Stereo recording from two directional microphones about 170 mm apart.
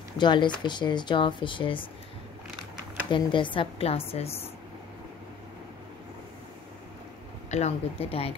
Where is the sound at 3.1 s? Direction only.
30° left (ahead or behind).